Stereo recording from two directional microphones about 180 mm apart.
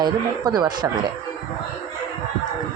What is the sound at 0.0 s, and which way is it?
Speech, 25° right (ahead or behind).